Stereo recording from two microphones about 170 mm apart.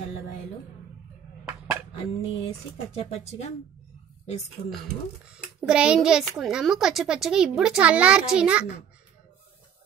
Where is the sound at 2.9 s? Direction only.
35° left (ahead or behind).